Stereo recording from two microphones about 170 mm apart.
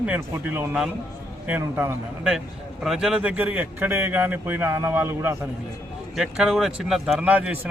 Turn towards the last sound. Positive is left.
turn(degrees=-10)  # may be behind; listen again after turning